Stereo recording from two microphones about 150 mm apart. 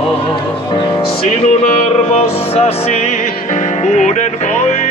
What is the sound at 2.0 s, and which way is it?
Music, 40° left (ahead or behind).